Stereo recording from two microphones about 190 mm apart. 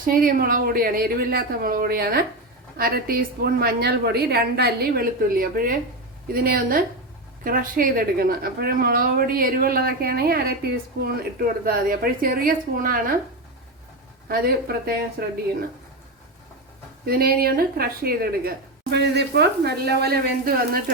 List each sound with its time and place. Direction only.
0.0 s speech: 50° right (ahead or behind)
14.3 s speech: 55° right (ahead or behind)
17.1 s speech: 50° right (ahead or behind)